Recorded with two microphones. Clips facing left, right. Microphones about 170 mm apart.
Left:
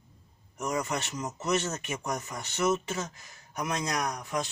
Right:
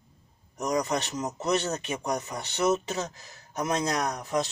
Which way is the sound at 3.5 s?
20° right (ahead or behind).